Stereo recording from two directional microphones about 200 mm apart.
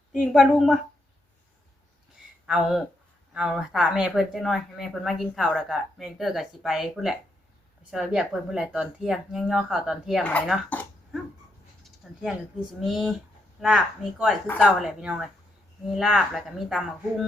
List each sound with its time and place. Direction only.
0.1 s speech: centre (ahead or behind)
2.5 s speech: centre (ahead or behind)
10.7 s a sound: 10° left (ahead or behind)
12.0 s speech: centre (ahead or behind)